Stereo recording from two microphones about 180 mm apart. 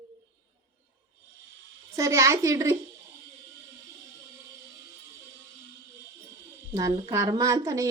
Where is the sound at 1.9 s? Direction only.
15° right (ahead or behind).